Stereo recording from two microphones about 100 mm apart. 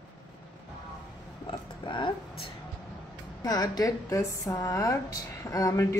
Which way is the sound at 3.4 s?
40° left (ahead or behind).